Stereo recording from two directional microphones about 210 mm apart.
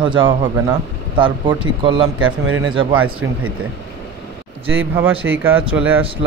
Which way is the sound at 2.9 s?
80° right.